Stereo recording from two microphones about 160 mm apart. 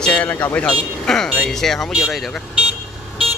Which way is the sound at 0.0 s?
5° left (ahead or behind).